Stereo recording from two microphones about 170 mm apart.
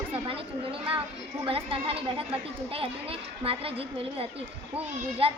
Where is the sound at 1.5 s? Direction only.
35° right (ahead or behind).